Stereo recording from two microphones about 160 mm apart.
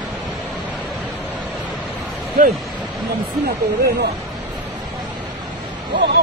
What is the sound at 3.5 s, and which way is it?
Speech, 75° right (ahead or behind).